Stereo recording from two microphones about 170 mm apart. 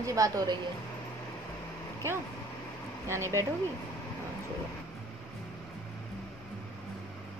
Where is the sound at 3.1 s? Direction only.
15° right (ahead or behind).